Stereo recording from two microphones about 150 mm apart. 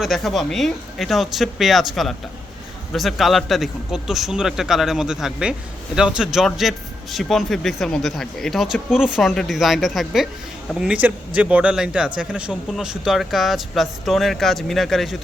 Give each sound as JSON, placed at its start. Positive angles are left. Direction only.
{"t": 0.0, "sound": "a man's voice", "side_deg": 0}